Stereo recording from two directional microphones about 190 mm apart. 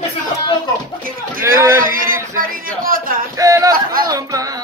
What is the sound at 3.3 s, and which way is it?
Speech, 15° right (ahead or behind).